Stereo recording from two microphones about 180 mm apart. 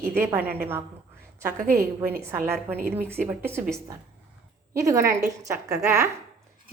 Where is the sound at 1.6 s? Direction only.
50° right (ahead or behind).